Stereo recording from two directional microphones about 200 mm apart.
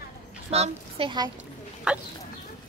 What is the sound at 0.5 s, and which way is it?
Speech, 30° right (ahead or behind).